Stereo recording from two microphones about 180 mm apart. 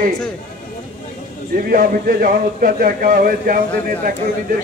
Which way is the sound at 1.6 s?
50° right (ahead or behind).